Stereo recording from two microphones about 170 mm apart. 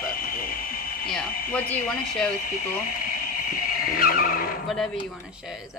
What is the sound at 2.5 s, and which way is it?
Speech, 55° left (ahead or behind).